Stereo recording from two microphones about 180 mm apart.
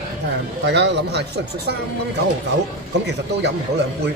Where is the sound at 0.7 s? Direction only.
70° right (ahead or behind).